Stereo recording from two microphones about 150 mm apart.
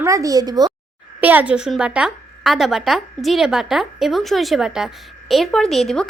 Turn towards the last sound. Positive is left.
turn(degrees=5)  # may be behind; listen again after turning